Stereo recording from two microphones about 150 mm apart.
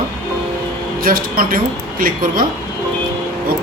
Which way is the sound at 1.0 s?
75° right (ahead or behind).